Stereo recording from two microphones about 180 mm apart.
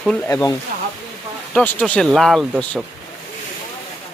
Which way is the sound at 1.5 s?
10° left (ahead or behind).